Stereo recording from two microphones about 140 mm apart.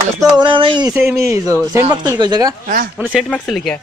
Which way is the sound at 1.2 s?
20° right (ahead or behind).